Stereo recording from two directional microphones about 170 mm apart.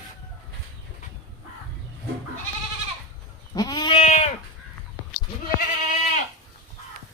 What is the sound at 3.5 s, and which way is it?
Goat, 25° left (ahead or behind).